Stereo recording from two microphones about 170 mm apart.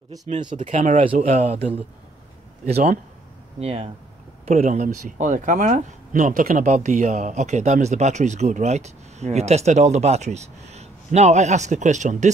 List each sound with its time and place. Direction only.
0.3 s speech: 45° right (ahead or behind)